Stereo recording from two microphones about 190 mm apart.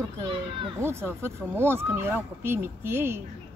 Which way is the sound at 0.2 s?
25° right (ahead or behind).